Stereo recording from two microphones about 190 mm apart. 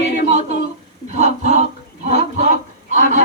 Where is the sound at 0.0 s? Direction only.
40° right (ahead or behind).